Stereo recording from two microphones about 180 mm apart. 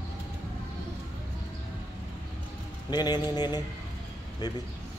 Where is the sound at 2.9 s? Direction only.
25° left (ahead or behind).